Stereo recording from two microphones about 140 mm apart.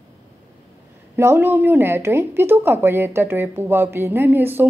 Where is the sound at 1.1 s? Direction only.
15° right (ahead or behind).